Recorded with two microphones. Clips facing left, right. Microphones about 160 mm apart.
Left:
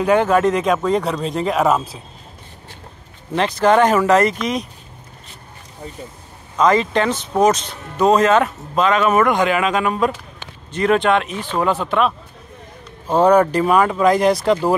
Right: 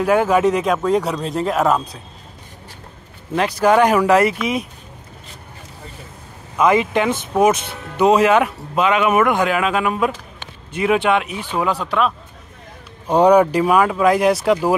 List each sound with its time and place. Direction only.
0.0 s speech: 5° right (ahead or behind)
3.3 s speech: 10° right (ahead or behind)
6.6 s speech: 10° right (ahead or behind)
13.1 s speech: 15° right (ahead or behind)